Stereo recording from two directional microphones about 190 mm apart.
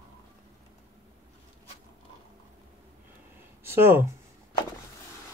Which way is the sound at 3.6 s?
10° right (ahead or behind).